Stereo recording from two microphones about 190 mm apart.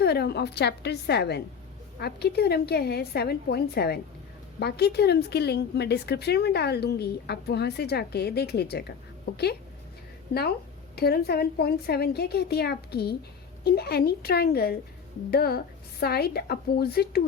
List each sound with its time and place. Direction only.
0.0 s a woman's voice: 60° left (ahead or behind)
10.9 s a woman's voice: 55° left (ahead or behind)